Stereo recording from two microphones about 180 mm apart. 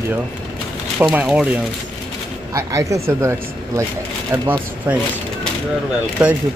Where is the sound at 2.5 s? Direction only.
15° right (ahead or behind).